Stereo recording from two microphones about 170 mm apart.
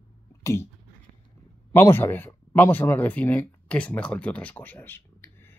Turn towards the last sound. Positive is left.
turn(degrees=10)  # may be behind; listen again after turning